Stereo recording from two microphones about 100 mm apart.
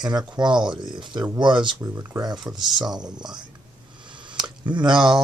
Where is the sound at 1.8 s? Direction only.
30° right (ahead or behind).